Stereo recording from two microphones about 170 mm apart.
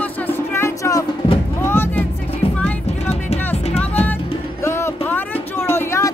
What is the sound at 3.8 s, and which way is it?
Music, 10° left (ahead or behind).